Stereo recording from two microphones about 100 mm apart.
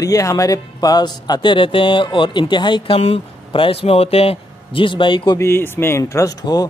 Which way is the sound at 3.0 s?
75° left (ahead or behind).